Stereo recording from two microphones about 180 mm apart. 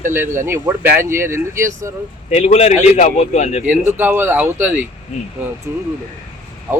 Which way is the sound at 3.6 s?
10° right (ahead or behind).